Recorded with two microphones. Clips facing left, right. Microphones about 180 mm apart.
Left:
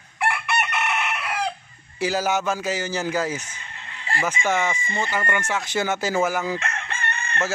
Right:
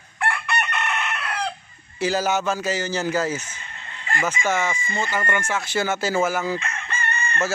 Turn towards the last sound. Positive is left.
turn(degrees=70)  # may be behind; listen again after turning